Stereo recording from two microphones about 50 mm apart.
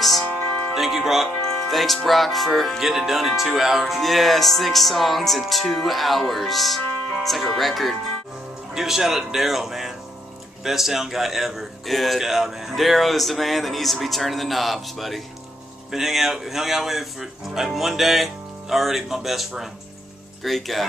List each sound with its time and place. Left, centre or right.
0.2 s music: left
0.7 s speech: centre
1.4 s speech: centre